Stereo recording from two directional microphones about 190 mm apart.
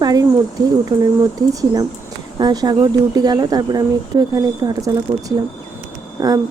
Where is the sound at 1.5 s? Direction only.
20° right (ahead or behind).